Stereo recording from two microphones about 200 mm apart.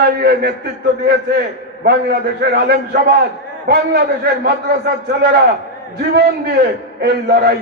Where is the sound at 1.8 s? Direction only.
55° right (ahead or behind).